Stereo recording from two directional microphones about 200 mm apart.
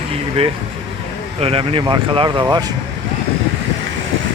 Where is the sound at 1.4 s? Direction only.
30° right (ahead or behind).